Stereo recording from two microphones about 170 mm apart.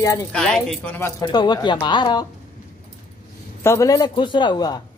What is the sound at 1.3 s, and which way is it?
Speech, 25° left (ahead or behind).